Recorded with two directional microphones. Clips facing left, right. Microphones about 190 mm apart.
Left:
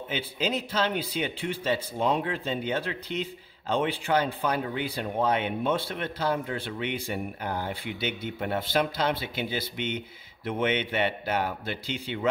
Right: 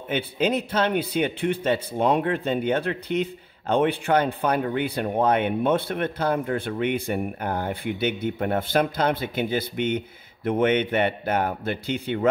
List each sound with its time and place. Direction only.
0.1 s a man's voice: 55° right (ahead or behind)